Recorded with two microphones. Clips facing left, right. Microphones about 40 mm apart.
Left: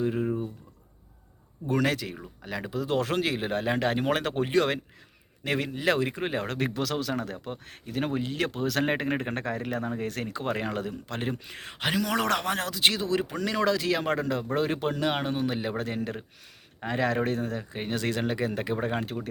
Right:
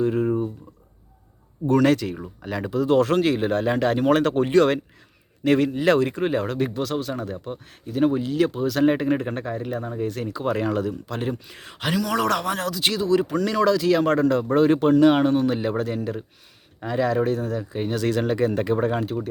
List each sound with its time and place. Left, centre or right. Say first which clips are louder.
0.0 s a sound: right 6 dB; centre
1.7 s a man's voice: right 8 dB; centre
6.5 s speech: right 5 dB; left
6.7 s speech: right 3 dB; left
7.7 s speech: right 9 dB; left
8.8 s speech: right 9 dB; left
9.3 s speech: right 3 dB; left
10.0 s speech: right 5 dB; left
10.2 s speech: right 6 dB; left
10.5 s speech: right 8 dB; left
13.3 s speech: right 7 dB; centre
13.6 s speech: right 6 dB; left
14.0 s speech: right 8 dB; centre
16.0 s speech: right 4 dB; left; by 18.8 s centre